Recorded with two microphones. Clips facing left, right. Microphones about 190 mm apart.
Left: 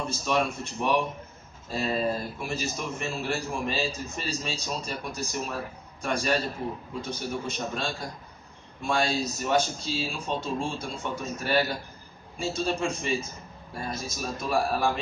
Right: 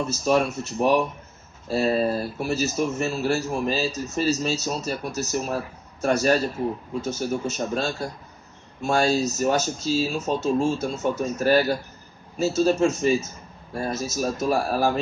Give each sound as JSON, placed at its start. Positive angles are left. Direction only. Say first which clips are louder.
{"t": 0.0, "sound": "a man's voice", "louder": "right 6 dB", "side_deg": -40}